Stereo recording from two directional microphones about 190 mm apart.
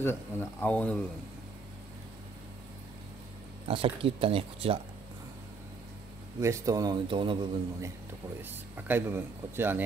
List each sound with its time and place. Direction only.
0.0 s speech: 10° left (ahead or behind)
3.6 s a man's voice: 30° right (ahead or behind)
6.4 s a man's voice: 15° right (ahead or behind)
8.4 s speech: 10° right (ahead or behind)